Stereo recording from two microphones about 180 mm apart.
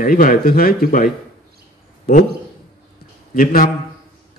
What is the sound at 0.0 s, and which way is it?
Speech, 50° left (ahead or behind).